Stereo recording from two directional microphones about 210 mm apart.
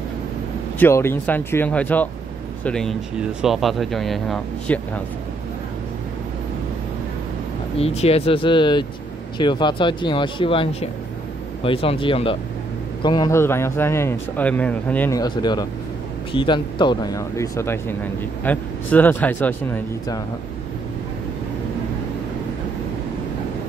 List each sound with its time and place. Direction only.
0.7 s speech: 10° left (ahead or behind)
7.8 s speech: 30° left (ahead or behind); by 20.2 s 10° left (ahead or behind)